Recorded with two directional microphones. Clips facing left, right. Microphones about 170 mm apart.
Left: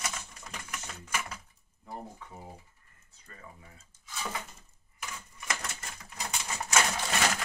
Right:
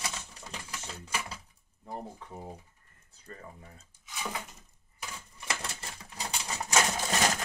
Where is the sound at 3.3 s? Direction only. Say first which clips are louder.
Right 7 dB; 35° right (ahead or behind).